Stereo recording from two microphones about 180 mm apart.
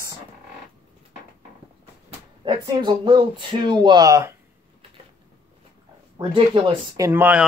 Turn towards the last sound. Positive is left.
turn(degrees=-10)  # may be behind; listen again after turning